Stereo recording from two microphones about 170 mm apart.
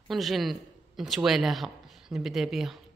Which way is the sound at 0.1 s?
Centre (ahead or behind).